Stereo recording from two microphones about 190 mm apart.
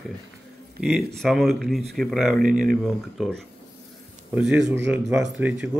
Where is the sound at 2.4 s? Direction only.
45° right (ahead or behind).